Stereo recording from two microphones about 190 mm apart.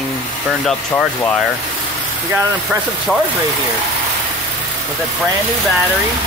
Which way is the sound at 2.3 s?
5° right (ahead or behind).